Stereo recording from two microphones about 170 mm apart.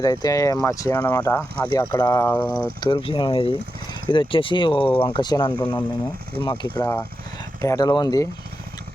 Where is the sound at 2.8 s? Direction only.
30° left (ahead or behind).